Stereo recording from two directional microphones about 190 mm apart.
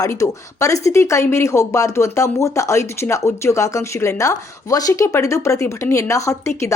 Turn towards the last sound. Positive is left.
turn(degrees=15)  # may be behind; listen again after turning